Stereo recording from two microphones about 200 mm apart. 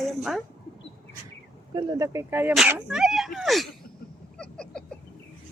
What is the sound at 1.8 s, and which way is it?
Speech, 20° right (ahead or behind).